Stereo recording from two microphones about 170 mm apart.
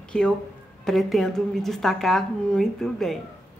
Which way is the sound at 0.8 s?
Centre (ahead or behind).